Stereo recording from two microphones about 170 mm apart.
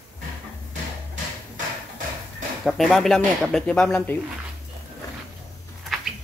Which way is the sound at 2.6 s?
Centre (ahead or behind).